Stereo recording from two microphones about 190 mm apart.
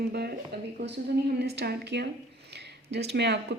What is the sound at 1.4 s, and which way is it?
A woman's voice, 60° right (ahead or behind).